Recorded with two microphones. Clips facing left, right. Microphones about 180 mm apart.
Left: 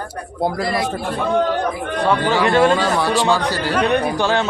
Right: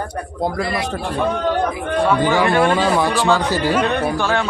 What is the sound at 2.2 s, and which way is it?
Speech, 15° right (ahead or behind).